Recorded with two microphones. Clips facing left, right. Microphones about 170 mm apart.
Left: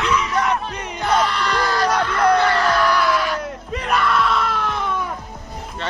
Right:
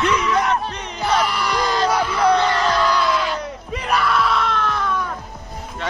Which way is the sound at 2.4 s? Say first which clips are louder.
Left 1 dB; 20° right (ahead or behind).